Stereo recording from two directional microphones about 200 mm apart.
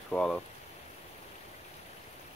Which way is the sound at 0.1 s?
5° left (ahead or behind).